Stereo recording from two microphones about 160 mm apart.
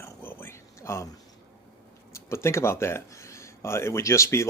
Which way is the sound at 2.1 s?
15° left (ahead or behind).